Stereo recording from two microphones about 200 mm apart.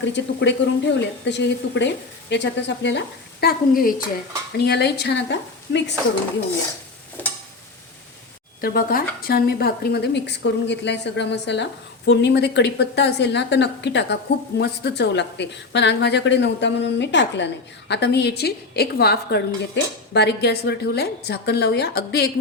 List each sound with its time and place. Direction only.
0.0 s speech: 60° left (ahead or behind)
3.4 s a woman's voice: 45° left (ahead or behind)
8.6 s speech: 45° left (ahead or behind)